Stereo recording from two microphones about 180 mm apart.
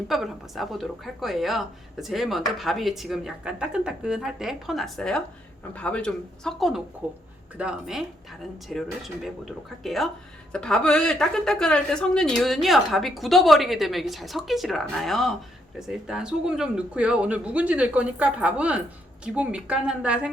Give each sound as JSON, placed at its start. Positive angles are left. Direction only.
{"t": 0.1, "sound": "a woman's voice", "side_deg": 0}